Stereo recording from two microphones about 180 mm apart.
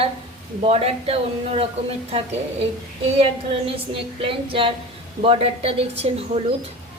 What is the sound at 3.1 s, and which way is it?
A woman's voice, 30° right (ahead or behind).